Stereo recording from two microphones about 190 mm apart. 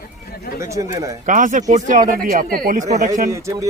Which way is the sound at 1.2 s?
40° right (ahead or behind).